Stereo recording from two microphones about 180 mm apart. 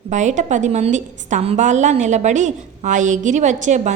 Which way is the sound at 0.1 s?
40° right (ahead or behind).